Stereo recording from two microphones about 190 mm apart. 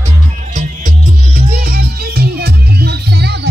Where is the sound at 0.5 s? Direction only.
40° right (ahead or behind).